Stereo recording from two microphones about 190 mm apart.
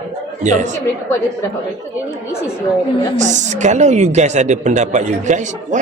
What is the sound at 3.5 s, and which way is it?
Speech, 40° right (ahead or behind).